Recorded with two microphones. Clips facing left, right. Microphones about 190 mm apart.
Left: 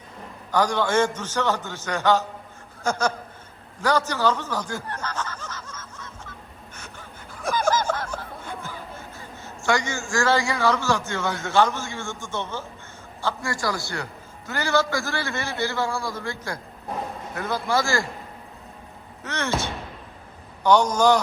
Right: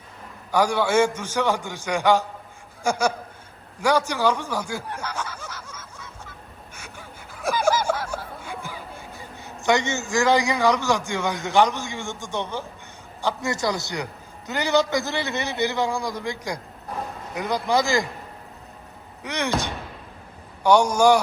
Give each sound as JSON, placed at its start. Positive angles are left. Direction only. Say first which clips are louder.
{"t": 0.5, "sound": "a man's voice", "louder": "right 2 dB", "side_deg": -10}
{"t": 3.8, "sound": "snicker", "louder": "right 1 dB", "side_deg": -10}
{"t": 6.7, "sound": "a sound", "louder": "right 1 dB", "side_deg": -10}
{"t": 9.6, "sound": "a man's voice", "louder": "right 3 dB", "side_deg": -20}
{"t": 19.2, "sound": "a man's voice", "louder": "right 1 dB", "side_deg": -15}